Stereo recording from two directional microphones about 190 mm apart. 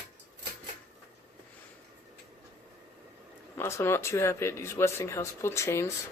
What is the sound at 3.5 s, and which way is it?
Speech, 15° left (ahead or behind).